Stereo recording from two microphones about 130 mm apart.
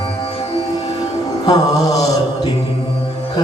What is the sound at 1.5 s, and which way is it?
Mantra, 25° left (ahead or behind).